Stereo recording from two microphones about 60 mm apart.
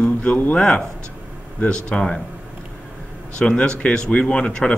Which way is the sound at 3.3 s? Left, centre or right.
Centre.